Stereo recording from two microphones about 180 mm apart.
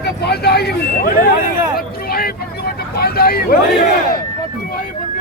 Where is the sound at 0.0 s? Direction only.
65° left (ahead or behind).